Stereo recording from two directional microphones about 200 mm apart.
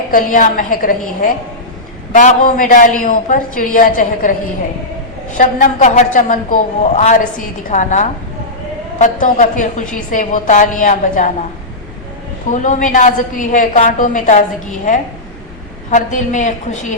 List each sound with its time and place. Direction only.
0.1 s a woman's voice: 40° left (ahead or behind)
9.2 s a woman's voice: 40° left (ahead or behind)
12.5 s a woman's voice: 40° left (ahead or behind)